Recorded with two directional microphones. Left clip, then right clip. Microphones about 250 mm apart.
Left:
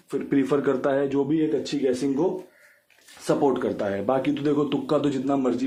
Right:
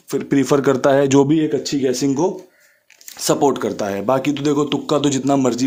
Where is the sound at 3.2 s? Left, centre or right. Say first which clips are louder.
Right 6 dB; right.